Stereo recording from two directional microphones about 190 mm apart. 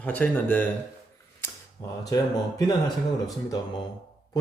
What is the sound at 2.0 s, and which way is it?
Speech, 20° left (ahead or behind).